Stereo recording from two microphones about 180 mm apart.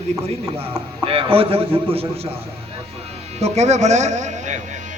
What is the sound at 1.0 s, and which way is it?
A man's voice, 30° right (ahead or behind).